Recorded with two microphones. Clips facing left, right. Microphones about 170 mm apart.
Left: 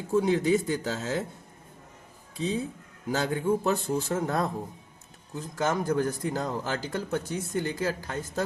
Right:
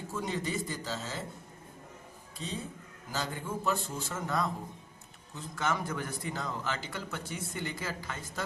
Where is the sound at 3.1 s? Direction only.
65° left (ahead or behind).